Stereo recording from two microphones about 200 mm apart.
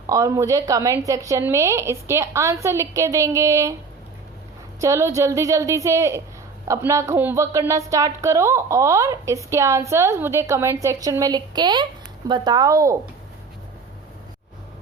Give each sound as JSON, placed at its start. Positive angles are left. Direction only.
{"t": 0.1, "sound": "a woman's voice", "side_deg": -15}
{"t": 4.8, "sound": "a woman's voice", "side_deg": -15}